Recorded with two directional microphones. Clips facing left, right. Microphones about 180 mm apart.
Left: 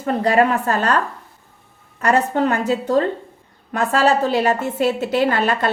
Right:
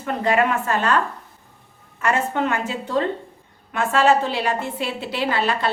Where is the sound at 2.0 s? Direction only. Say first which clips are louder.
Left 4 dB; 40° left (ahead or behind).